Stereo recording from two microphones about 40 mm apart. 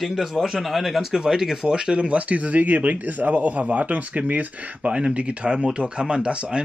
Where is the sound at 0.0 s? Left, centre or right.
Centre.